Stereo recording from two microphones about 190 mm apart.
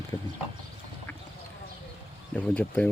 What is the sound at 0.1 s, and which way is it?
Clip-clop, 20° left (ahead or behind).